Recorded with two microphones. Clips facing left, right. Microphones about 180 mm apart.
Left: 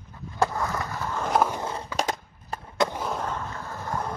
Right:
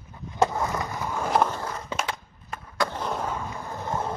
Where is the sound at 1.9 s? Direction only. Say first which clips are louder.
Left 3 dB; 35° left (ahead or behind).